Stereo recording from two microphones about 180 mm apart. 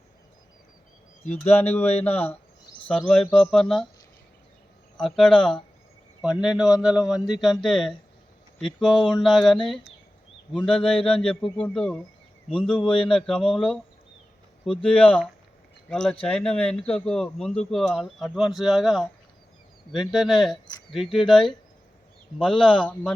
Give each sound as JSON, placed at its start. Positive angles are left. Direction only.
{"t": 1.5, "sound": "speech", "side_deg": 10}
{"t": 4.9, "sound": "speech", "side_deg": 5}
{"t": 12.9, "sound": "a sound", "side_deg": 30}
{"t": 13.1, "sound": "speech", "side_deg": 5}